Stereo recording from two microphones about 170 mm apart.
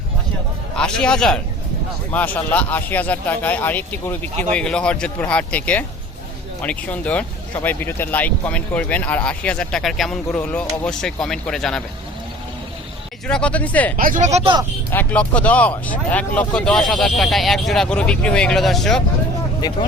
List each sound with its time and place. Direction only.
0.8 s a man's voice: 5° left (ahead or behind)
13.2 s speech: 5° left (ahead or behind)
13.9 s speech: 55° right (ahead or behind)
14.8 s speech: 10° left (ahead or behind)
19.6 s speech: 25° left (ahead or behind)